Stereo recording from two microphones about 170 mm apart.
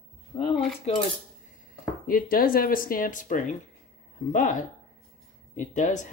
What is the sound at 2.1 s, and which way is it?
Speech, 55° left (ahead or behind).